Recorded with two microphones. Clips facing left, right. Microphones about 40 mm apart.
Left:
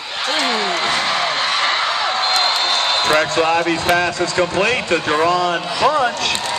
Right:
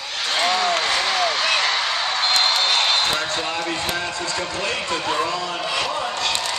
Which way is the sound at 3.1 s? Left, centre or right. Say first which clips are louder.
Left 9 dB; left.